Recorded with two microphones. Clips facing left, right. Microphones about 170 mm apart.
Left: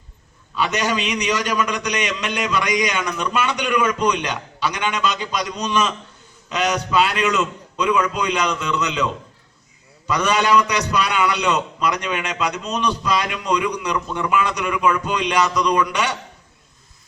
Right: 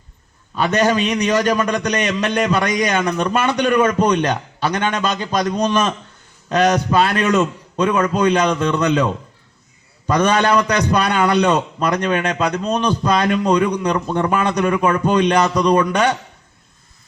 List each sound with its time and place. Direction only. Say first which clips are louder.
0.5 s a man's voice: right 5 dB; 50° right (ahead or behind)
10.1 s a man's voice: right 3 dB; 50° right (ahead or behind)